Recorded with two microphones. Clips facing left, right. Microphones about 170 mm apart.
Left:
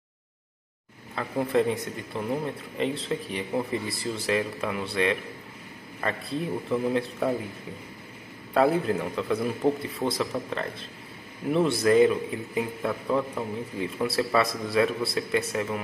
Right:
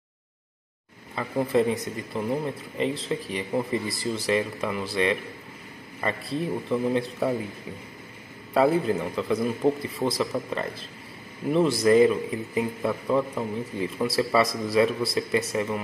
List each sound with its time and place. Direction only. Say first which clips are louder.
1.1 s a man's voice: right 1 dB; centre (ahead or behind)
8.5 s a man's voice: right 1 dB; centre (ahead or behind)